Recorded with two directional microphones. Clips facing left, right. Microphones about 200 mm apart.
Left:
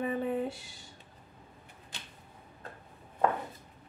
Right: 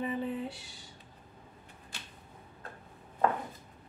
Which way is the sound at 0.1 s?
55° left (ahead or behind).